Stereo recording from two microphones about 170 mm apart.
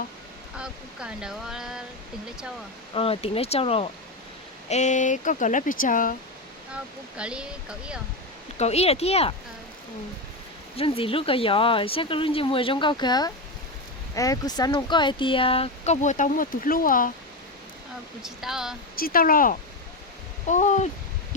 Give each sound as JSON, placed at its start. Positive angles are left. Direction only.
{"t": 0.5, "sound": "speech", "side_deg": -5}
{"t": 2.9, "sound": "speech", "side_deg": 35}
{"t": 7.2, "sound": "speech", "side_deg": -5}
{"t": 8.5, "sound": "speech", "side_deg": 40}
{"t": 10.8, "sound": "speech", "side_deg": 35}
{"t": 18.2, "sound": "speech", "side_deg": -5}
{"t": 18.9, "sound": "speech", "side_deg": 60}
{"t": 20.5, "sound": "speech", "side_deg": 45}